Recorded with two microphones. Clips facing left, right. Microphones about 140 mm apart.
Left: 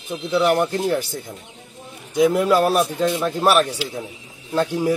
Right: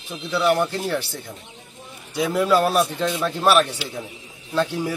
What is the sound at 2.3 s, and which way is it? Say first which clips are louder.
Speech: left 1 dB; 10° left (ahead or behind).